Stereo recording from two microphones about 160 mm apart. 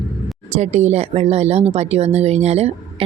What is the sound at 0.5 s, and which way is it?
Speech, 45° right (ahead or behind).